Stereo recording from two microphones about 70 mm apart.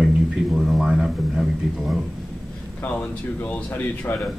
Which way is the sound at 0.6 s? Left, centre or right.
Centre.